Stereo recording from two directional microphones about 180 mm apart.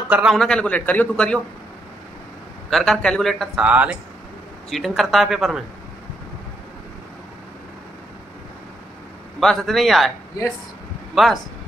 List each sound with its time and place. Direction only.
0.1 s a man's voice: 5° right (ahead or behind)
2.7 s a man's voice: centre (ahead or behind)
9.4 s a man's voice: centre (ahead or behind)
11.2 s a man's voice: centre (ahead or behind)